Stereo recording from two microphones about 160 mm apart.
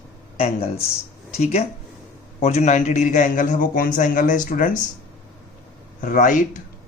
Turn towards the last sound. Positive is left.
turn(degrees=55)  # may be behind; listen again after turning